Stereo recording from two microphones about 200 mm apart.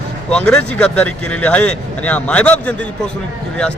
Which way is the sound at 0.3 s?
5° left (ahead or behind).